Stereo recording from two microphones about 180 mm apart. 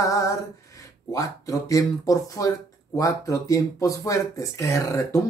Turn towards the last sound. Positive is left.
turn(degrees=15)  # may be behind; listen again after turning